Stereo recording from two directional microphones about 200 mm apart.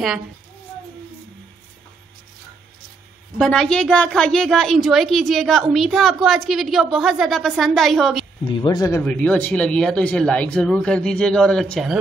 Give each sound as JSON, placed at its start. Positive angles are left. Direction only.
{"t": 3.3, "sound": "a woman's voice", "side_deg": 0}
{"t": 8.5, "sound": "speech", "side_deg": 20}
{"t": 9.0, "sound": "a woman's voice", "side_deg": 5}